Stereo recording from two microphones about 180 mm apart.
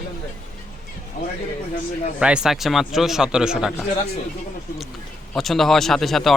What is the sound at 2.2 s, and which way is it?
A man's voice, 5° right (ahead or behind).